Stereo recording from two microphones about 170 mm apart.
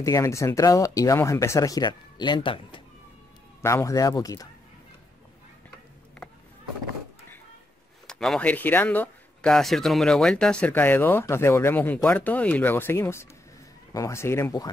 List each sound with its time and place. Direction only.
0.0 s speech: 15° left (ahead or behind)
3.6 s speech: 15° left (ahead or behind)
8.1 s speech: 5° left (ahead or behind); by 14.7 s 20° left (ahead or behind)